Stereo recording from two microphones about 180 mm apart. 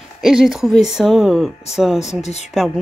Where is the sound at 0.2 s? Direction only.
Centre (ahead or behind).